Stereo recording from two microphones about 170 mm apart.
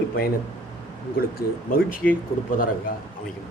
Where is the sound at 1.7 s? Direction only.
55° left (ahead or behind).